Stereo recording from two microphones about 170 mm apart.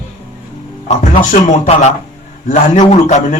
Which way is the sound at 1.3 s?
45° left (ahead or behind).